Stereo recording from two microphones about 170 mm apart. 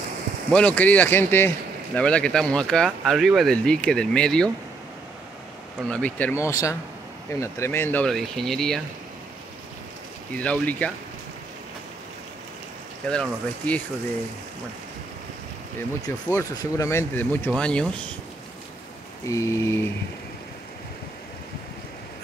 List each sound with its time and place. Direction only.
0.5 s speech: 5° left (ahead or behind)
5.9 s speech: 5° left (ahead or behind)
10.3 s speech: 10° left (ahead or behind)
13.1 s speech: 5° left (ahead or behind)
16.3 s speech: 20° left (ahead or behind)
19.2 s rain: 20° left (ahead or behind)